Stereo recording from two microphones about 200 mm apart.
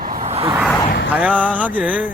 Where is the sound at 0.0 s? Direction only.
45° right (ahead or behind).